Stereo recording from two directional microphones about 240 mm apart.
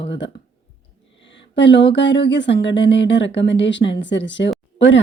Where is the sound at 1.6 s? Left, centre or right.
Left.